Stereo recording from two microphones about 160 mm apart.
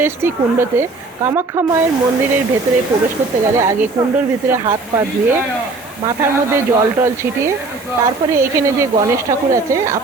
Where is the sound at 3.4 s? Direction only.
15° right (ahead or behind).